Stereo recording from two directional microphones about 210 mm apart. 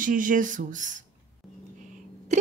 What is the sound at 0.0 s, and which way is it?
Speech, 40° right (ahead or behind).